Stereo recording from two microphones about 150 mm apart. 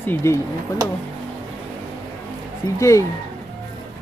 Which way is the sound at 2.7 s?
20° left (ahead or behind).